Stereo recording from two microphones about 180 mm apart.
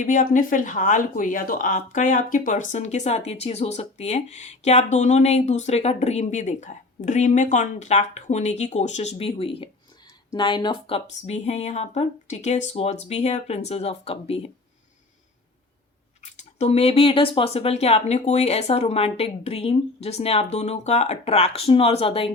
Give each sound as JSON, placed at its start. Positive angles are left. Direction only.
{"t": 0.0, "sound": "speech", "side_deg": 45}
{"t": 16.2, "sound": "speech", "side_deg": 40}